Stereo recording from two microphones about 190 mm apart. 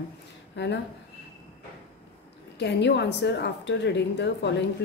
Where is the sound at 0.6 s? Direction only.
65° left (ahead or behind).